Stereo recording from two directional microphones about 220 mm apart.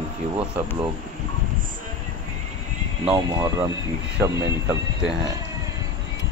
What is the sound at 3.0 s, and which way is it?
Speech, 15° right (ahead or behind).